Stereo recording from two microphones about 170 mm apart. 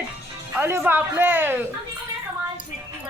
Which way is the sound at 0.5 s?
15° right (ahead or behind).